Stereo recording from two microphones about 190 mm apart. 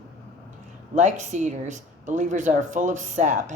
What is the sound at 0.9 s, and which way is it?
Speech, 40° right (ahead or behind).